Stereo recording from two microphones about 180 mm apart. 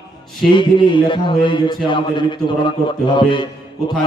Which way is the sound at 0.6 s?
25° left (ahead or behind).